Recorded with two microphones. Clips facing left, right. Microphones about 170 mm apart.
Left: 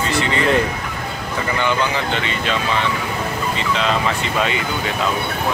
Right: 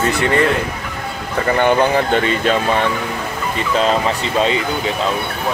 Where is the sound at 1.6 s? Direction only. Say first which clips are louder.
Right 7 dB; 50° right (ahead or behind).